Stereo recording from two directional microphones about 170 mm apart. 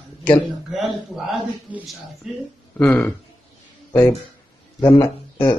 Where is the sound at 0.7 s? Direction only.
Centre (ahead or behind).